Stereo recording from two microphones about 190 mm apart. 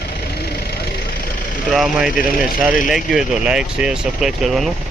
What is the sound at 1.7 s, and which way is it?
Speech, centre (ahead or behind).